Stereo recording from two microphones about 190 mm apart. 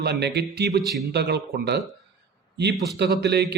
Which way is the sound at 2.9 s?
60° right (ahead or behind).